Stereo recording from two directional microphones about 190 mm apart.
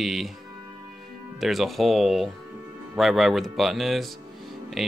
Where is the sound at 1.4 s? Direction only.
Centre (ahead or behind).